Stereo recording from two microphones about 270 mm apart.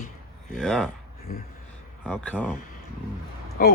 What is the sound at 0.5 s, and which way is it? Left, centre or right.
Speech, centre.